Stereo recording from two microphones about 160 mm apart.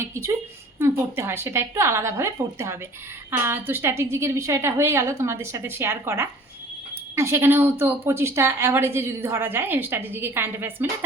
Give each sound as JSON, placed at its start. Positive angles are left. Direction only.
{"t": 0.0, "sound": "a woman's voice", "side_deg": -15}